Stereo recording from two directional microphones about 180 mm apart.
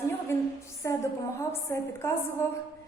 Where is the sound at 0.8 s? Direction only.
15° left (ahead or behind).